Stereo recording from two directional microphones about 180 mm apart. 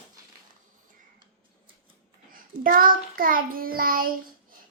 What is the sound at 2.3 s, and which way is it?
Hands, 50° right (ahead or behind).